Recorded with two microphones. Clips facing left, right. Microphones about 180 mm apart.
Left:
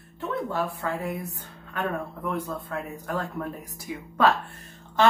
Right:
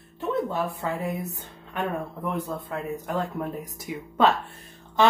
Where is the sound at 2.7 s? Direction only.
20° right (ahead or behind).